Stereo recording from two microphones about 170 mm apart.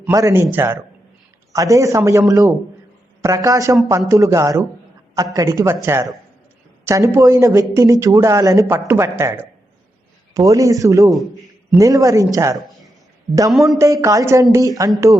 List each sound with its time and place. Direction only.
0.0 s a man's voice: 20° right (ahead or behind)
13.5 s a man's voice: centre (ahead or behind)
13.7 s a man's voice: 20° right (ahead or behind)